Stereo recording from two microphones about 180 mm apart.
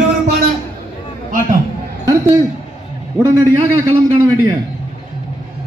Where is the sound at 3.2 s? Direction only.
15° right (ahead or behind).